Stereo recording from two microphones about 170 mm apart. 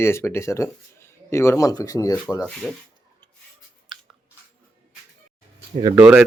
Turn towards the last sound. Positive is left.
turn(degrees=-10)  # may be behind; listen again after turning